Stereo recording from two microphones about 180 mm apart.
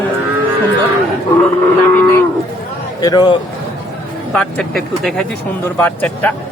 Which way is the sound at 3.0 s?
25° left (ahead or behind).